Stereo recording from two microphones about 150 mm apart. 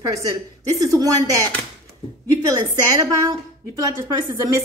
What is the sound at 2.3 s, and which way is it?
A woman's voice, 25° right (ahead or behind).